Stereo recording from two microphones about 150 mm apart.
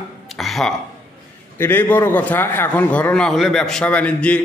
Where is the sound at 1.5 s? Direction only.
15° left (ahead or behind).